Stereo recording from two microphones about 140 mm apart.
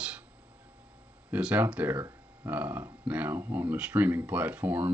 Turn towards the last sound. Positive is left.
turn(degrees=-10)  # may be behind; listen again after turning